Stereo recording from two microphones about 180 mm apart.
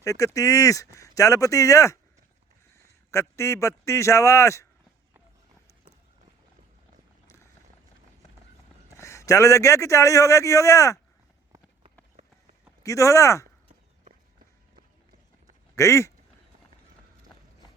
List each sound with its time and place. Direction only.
0.0 s a man's voice: 15° left (ahead or behind)
8.9 s a man's voice: 15° left (ahead or behind)
12.8 s a man's voice: 15° left (ahead or behind)
15.7 s speech: 15° left (ahead or behind)